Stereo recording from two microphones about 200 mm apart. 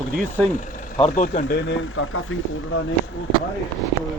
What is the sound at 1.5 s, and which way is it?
Speech, 65° left (ahead or behind).